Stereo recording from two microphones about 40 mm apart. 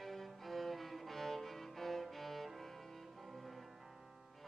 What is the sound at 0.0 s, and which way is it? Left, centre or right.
Music, centre.